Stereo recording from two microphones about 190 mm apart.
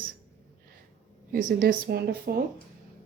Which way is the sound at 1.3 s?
50° right (ahead or behind).